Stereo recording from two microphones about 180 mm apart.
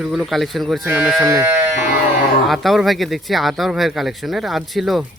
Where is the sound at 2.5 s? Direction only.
Centre (ahead or behind).